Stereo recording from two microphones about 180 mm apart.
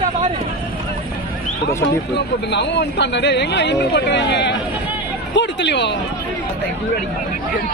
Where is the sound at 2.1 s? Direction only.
70° left (ahead or behind).